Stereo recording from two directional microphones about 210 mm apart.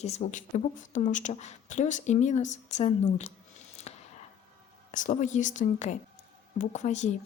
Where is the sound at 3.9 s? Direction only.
30° left (ahead or behind).